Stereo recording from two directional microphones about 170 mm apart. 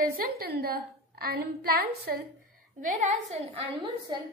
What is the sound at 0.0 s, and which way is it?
A woman's voice, 60° right (ahead or behind).